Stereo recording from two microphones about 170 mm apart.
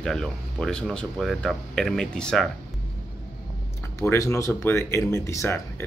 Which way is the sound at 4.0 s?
15° left (ahead or behind).